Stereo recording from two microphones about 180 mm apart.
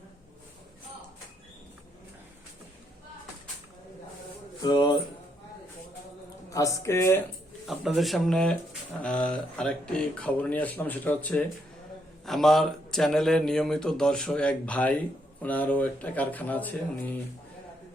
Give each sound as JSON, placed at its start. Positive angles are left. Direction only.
{"t": 4.6, "sound": "speech", "side_deg": 25}
{"t": 6.5, "sound": "speech", "side_deg": 20}
{"t": 7.7, "sound": "speech", "side_deg": 0}